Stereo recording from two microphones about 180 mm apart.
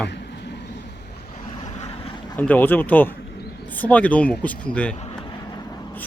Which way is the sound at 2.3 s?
10° left (ahead or behind).